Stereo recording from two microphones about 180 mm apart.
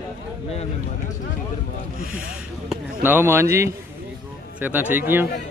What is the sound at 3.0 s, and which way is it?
Speech, 10° right (ahead or behind).